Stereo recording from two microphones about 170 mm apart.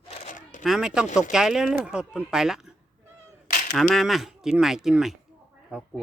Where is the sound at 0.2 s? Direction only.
45° left (ahead or behind).